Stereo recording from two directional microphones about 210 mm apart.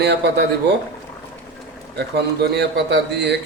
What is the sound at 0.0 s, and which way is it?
Speech, 55° right (ahead or behind).